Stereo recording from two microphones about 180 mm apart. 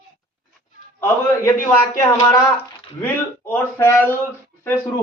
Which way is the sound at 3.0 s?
10° left (ahead or behind).